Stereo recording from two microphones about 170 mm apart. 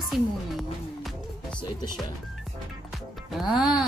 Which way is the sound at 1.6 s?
25° left (ahead or behind).